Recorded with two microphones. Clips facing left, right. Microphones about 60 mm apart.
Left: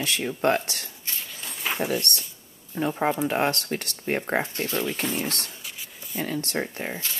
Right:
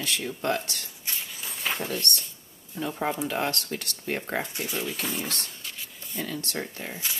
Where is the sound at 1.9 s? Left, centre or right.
Centre.